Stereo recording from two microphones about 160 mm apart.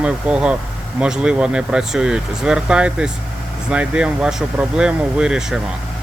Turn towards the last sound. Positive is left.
turn(degrees=-5)  # may be behind; listen again after turning